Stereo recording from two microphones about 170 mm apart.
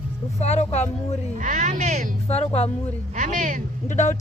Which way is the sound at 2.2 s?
35° left (ahead or behind).